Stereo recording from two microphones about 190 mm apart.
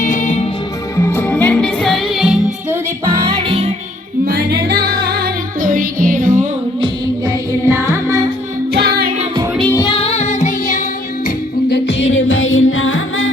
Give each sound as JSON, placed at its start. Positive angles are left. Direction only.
{"t": 0.0, "sound": "music", "side_deg": 40}
{"t": 0.9, "sound": "music", "side_deg": 10}
{"t": 3.3, "sound": "music", "side_deg": -30}
{"t": 4.3, "sound": "music", "side_deg": -55}
{"t": 6.8, "sound": "music", "side_deg": -20}
{"t": 8.7, "sound": "music", "side_deg": -55}
{"t": 9.6, "sound": "music", "side_deg": 10}
{"t": 9.8, "sound": "music", "side_deg": 30}
{"t": 11.7, "sound": "music", "side_deg": 70}